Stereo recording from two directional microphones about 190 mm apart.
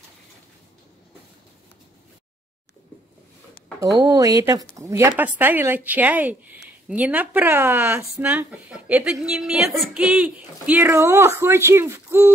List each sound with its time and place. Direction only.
4.0 s speech: 20° right (ahead or behind)